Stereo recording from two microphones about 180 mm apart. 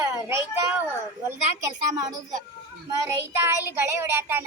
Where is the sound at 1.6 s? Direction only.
20° right (ahead or behind).